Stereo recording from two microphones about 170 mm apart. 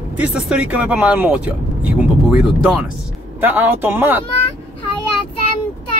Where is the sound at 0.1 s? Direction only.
5° right (ahead or behind).